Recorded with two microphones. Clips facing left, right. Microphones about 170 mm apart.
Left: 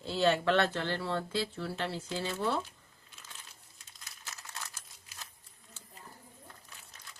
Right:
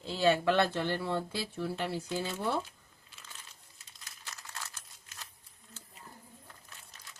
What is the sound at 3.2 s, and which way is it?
Crumpling, centre (ahead or behind).